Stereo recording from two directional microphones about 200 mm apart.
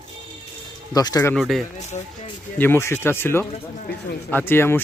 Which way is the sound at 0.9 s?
20° left (ahead or behind).